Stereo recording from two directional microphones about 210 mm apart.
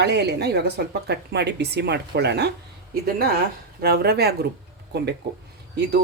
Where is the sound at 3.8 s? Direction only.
45° right (ahead or behind).